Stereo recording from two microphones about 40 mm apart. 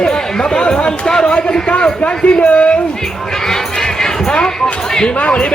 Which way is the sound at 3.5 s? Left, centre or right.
Centre.